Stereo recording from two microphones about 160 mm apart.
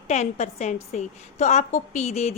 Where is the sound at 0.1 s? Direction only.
45° left (ahead or behind).